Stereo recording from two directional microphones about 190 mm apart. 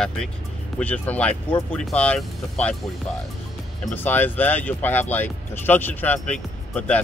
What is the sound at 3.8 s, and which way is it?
Speech, 10° left (ahead or behind).